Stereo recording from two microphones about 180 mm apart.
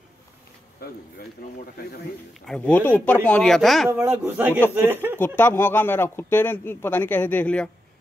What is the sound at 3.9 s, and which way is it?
Speech, 10° right (ahead or behind).